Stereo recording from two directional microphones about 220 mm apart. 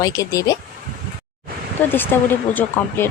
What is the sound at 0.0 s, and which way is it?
Speech, 15° left (ahead or behind).